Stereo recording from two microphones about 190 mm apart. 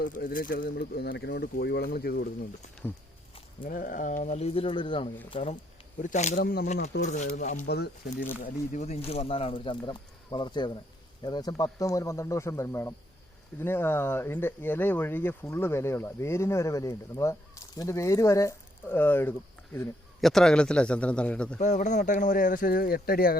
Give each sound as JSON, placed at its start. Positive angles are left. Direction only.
{"t": 0.0, "sound": "speech", "side_deg": 45}
{"t": 3.6, "sound": "speech", "side_deg": 45}
{"t": 6.0, "sound": "speech", "side_deg": 40}
{"t": 6.4, "sound": "speech", "side_deg": 55}
{"t": 7.0, "sound": "a man's voice", "side_deg": 40}
{"t": 8.4, "sound": "a man's voice", "side_deg": 40}
{"t": 21.6, "sound": "a man's voice", "side_deg": 40}